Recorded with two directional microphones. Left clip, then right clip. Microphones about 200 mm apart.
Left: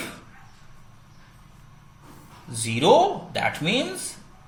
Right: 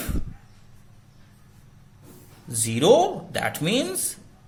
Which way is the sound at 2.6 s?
35° right (ahead or behind).